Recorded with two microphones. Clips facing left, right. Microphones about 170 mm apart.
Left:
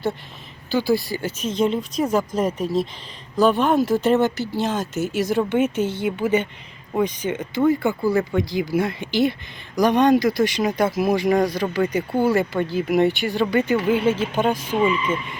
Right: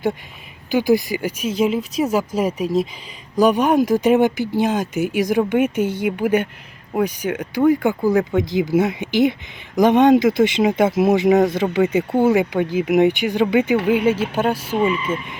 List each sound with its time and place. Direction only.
0.7 s speech: 15° right (ahead or behind)